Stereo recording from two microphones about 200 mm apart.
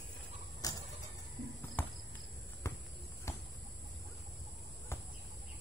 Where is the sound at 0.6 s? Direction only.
15° left (ahead or behind).